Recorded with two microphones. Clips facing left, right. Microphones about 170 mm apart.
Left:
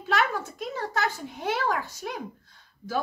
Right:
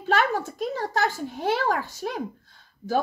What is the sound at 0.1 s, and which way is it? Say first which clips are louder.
A woman's voice: right 3 dB; 40° right (ahead or behind).